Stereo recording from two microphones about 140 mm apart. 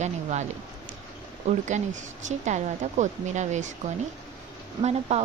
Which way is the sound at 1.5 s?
60° right (ahead or behind).